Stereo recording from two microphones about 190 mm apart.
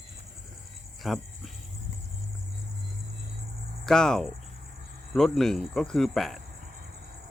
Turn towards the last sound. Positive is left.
turn(degrees=0)  # may be behind; listen again after turning